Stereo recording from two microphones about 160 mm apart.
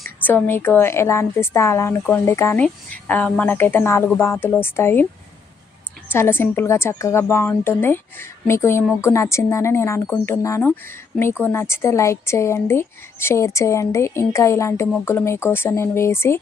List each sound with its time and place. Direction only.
0.3 s a woman's voice: 10° left (ahead or behind)
6.1 s a woman's voice: 15° left (ahead or behind)